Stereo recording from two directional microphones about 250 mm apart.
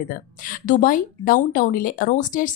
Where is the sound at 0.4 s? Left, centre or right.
Left.